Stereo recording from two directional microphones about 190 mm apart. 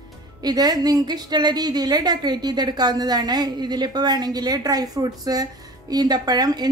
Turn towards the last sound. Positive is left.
turn(degrees=-20)  # may be behind; listen again after turning